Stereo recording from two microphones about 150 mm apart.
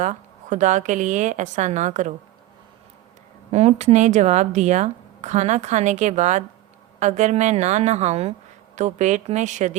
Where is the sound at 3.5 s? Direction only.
45° right (ahead or behind).